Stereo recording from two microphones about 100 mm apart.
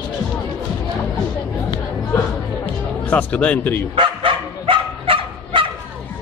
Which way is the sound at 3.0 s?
15° left (ahead or behind).